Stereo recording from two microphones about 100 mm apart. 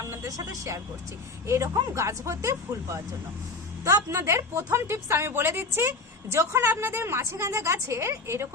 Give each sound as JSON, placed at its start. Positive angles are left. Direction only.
{"t": 0.0, "sound": "a woman's voice", "side_deg": -30}